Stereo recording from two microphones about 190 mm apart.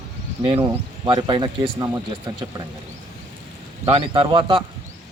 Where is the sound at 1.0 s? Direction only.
25° right (ahead or behind).